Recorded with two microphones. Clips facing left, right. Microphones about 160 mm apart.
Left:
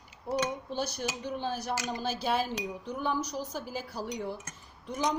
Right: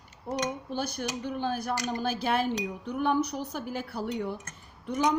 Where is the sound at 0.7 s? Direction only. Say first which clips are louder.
Right 1 dB; 55° right (ahead or behind).